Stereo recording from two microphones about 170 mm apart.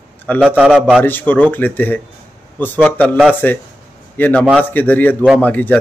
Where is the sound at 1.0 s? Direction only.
10° left (ahead or behind).